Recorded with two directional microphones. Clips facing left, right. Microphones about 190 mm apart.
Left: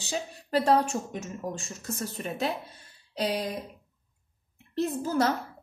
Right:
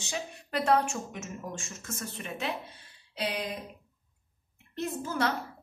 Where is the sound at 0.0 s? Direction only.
35° left (ahead or behind).